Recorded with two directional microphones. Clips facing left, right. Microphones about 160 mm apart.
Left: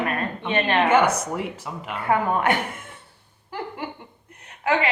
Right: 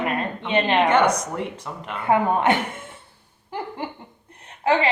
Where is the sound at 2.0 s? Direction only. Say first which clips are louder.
Right 2 dB; 20° right (ahead or behind).